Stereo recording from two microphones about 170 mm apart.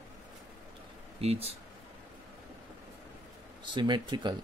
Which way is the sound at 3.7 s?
25° right (ahead or behind).